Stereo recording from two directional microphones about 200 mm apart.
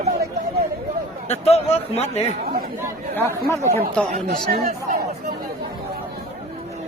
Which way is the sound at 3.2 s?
15° left (ahead or behind).